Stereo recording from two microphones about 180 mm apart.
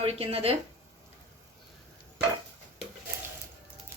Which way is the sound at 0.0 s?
35° right (ahead or behind).